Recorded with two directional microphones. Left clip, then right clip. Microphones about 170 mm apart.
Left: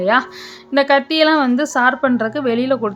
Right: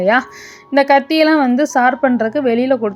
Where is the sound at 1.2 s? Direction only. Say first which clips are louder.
Right 2 dB; 15° right (ahead or behind).